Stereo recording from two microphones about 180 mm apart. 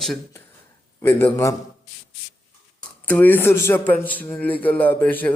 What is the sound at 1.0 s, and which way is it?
Speech, 10° left (ahead or behind).